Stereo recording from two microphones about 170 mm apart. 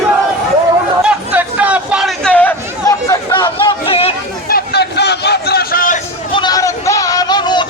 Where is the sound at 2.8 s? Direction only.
25° left (ahead or behind).